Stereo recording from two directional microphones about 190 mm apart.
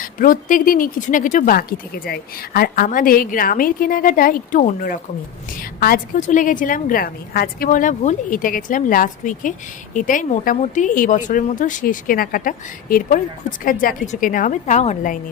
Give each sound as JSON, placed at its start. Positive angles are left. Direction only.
{"t": 0.0, "sound": "speech", "side_deg": 45}